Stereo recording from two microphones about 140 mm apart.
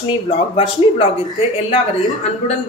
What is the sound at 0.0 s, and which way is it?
Speech, 40° left (ahead or behind).